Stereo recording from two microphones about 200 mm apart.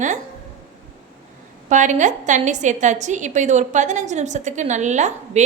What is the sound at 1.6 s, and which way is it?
A woman's voice, 35° right (ahead or behind).